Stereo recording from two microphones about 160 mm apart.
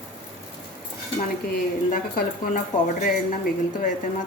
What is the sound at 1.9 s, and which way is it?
Speech, 60° left (ahead or behind).